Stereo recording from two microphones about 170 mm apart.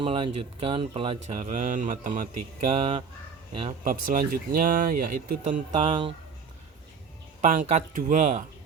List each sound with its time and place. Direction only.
0.0 s speech: 35° right (ahead or behind)
1.5 s speech: 50° right (ahead or behind)
2.6 s speech: 35° right (ahead or behind)
4.0 s speech: 55° right (ahead or behind)
5.8 s speech: 35° right (ahead or behind)
7.4 s speech: 50° right (ahead or behind)